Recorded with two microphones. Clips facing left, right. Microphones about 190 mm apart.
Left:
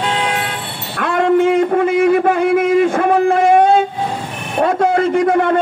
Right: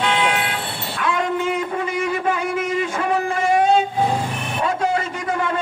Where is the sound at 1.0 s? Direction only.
60° left (ahead or behind).